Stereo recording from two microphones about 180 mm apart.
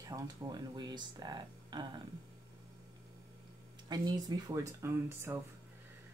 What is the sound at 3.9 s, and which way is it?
Speech, 20° right (ahead or behind).